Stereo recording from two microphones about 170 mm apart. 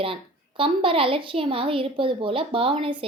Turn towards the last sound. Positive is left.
turn(degrees=-30)  # may be behind; listen again after turning